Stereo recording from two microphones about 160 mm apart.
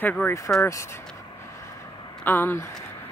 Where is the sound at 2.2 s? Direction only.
15° left (ahead or behind).